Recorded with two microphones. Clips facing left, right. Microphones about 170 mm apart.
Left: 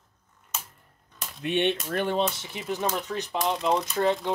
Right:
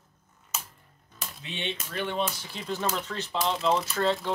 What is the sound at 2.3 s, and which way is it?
Speech, 20° left (ahead or behind).